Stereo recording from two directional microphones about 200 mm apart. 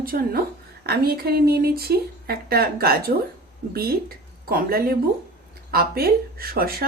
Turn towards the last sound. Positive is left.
turn(degrees=-45)  # may be behind; listen again after turning